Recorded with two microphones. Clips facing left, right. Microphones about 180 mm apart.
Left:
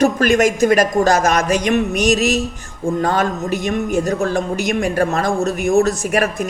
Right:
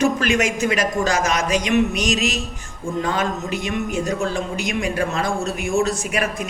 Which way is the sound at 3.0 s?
45° left (ahead or behind).